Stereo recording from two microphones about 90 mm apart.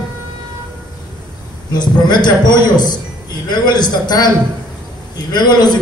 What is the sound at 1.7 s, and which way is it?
A man's voice, 55° left (ahead or behind).